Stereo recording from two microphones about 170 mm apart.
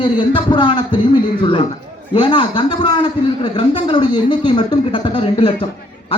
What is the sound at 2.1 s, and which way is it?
A man's voice, 30° left (ahead or behind).